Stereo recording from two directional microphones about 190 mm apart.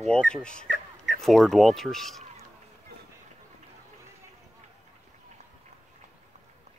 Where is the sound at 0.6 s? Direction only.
45° right (ahead or behind).